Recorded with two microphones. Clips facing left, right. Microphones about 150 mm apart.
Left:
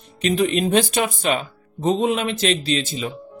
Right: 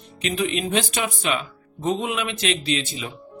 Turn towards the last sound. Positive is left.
turn(degrees=40)  # may be behind; listen again after turning